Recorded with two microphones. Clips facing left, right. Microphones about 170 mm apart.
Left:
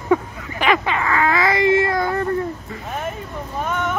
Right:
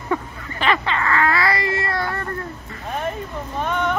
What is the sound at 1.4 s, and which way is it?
Baby cry, 20° left (ahead or behind).